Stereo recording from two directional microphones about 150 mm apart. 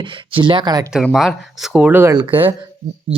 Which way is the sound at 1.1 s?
Centre (ahead or behind).